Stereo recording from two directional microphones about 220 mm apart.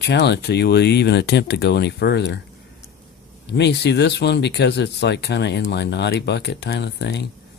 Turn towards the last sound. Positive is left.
turn(degrees=50)  # may be behind; listen again after turning